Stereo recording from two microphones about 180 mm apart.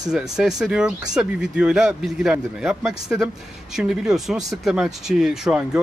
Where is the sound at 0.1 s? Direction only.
5° right (ahead or behind).